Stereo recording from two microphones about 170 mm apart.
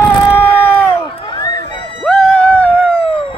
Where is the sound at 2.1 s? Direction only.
10° left (ahead or behind).